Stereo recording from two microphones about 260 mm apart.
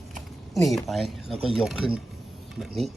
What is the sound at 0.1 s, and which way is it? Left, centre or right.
A man's voice, centre.